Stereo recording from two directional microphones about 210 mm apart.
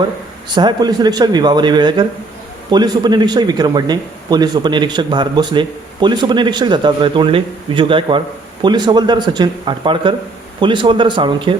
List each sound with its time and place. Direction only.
0.5 s speech: 20° right (ahead or behind)